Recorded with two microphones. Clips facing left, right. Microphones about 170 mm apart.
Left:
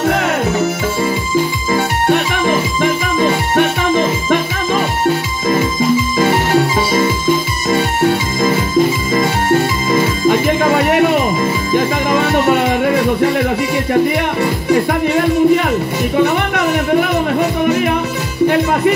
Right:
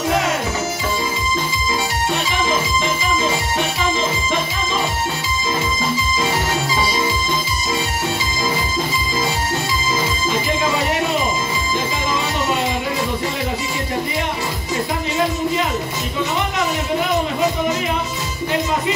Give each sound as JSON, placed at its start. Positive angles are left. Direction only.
{"t": 1.7, "sound": "music", "side_deg": 60}
{"t": 9.1, "sound": "music", "side_deg": 60}
{"t": 14.4, "sound": "music", "side_deg": 60}